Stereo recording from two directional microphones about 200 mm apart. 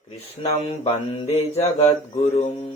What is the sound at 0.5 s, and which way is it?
Speech, 30° left (ahead or behind).